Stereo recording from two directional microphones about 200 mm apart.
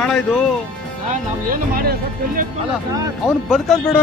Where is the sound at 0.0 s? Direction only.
Centre (ahead or behind).